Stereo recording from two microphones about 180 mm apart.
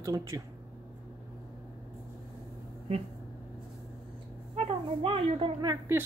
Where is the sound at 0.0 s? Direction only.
20° right (ahead or behind).